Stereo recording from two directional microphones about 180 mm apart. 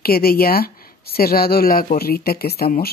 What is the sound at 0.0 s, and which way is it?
Speech, 55° left (ahead or behind).